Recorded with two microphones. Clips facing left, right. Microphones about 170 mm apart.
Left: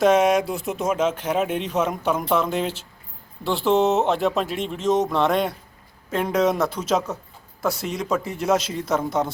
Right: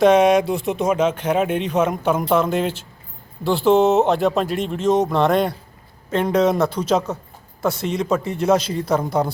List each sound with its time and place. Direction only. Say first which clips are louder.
0.0 s speech: right 4 dB; centre (ahead or behind)
9.0 s speech: right 3 dB; 35° right (ahead or behind)